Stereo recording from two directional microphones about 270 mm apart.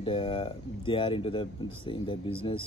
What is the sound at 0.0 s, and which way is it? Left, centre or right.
A man's voice, centre.